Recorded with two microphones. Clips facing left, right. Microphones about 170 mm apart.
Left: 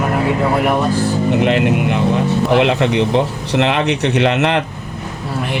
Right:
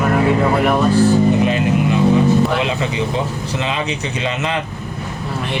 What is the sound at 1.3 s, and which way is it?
Speech, 70° left (ahead or behind).